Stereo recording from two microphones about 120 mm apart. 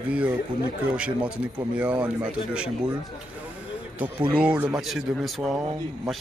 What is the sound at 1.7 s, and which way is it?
Speech, 10° right (ahead or behind).